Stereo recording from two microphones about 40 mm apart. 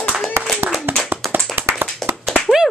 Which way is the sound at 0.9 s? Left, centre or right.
Right.